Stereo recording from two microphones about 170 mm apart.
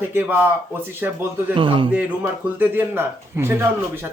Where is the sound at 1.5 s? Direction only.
30° right (ahead or behind).